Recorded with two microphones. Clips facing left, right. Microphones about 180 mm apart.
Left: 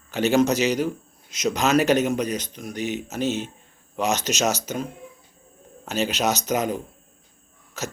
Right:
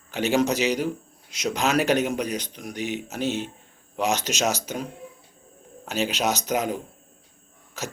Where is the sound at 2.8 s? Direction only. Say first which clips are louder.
Left 2 dB; 45° left (ahead or behind).